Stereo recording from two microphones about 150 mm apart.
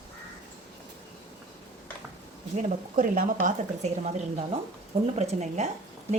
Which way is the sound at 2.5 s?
65° right (ahead or behind).